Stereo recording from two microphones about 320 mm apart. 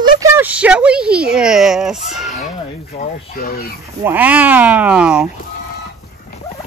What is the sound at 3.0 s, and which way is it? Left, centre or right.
Speech, left.